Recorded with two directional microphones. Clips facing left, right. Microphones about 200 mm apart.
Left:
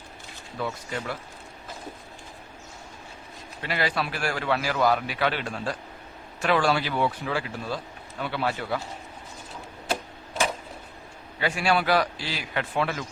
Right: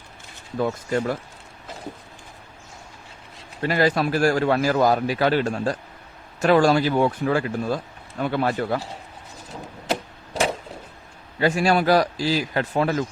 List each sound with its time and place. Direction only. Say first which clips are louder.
0.6 s a man's voice: right 8 dB; 45° right (ahead or behind)
3.6 s a man's voice: right 8 dB; 45° right (ahead or behind)
11.3 s a man's voice: right 5 dB; 40° right (ahead or behind)